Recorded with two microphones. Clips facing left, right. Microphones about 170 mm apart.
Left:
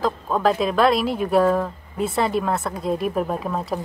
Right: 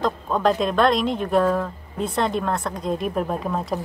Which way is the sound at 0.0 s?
5° left (ahead or behind).